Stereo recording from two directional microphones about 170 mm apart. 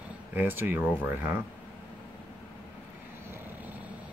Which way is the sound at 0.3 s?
10° right (ahead or behind).